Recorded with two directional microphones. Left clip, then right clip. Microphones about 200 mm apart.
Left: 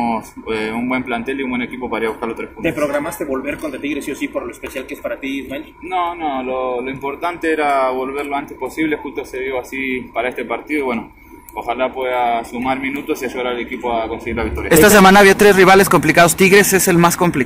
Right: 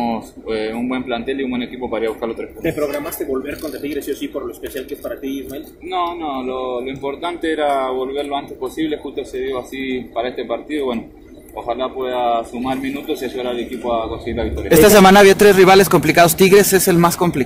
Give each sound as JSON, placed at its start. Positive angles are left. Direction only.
{"t": 0.0, "sound": "speech", "side_deg": 0}
{"t": 2.6, "sound": "a man's voice", "side_deg": 25}
{"t": 5.9, "sound": "speech", "side_deg": 5}